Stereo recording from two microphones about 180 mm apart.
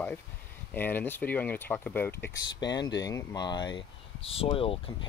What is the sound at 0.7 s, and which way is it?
Speech, 10° left (ahead or behind).